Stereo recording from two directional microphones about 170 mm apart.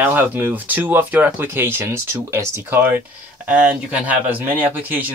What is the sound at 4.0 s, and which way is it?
Speech, 10° right (ahead or behind).